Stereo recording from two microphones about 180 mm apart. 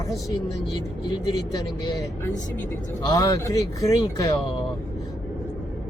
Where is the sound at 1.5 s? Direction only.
20° left (ahead or behind).